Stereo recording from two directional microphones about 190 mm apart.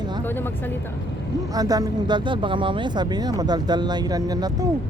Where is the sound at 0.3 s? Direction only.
10° left (ahead or behind).